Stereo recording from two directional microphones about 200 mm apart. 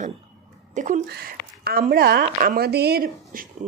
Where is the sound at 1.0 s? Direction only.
50° right (ahead or behind).